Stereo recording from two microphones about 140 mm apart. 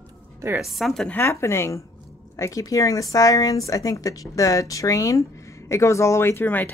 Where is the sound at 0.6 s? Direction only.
Centre (ahead or behind).